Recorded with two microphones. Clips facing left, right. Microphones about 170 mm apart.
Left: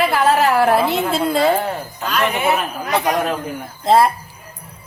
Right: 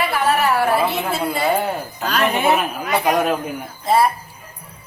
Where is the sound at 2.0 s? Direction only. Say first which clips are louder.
Right 1 dB; 35° right (ahead or behind).